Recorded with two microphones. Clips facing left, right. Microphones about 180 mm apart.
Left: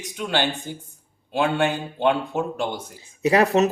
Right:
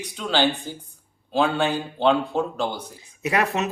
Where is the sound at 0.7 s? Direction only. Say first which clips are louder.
Left 1 dB; 20° left (ahead or behind).